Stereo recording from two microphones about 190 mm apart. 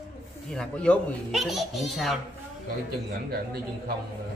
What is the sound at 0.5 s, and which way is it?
A woman's voice, 5° left (ahead or behind).